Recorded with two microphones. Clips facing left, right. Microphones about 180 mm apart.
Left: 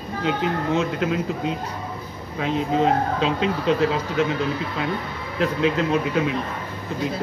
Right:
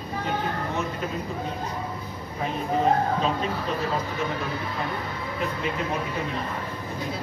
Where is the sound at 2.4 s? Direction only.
90° left.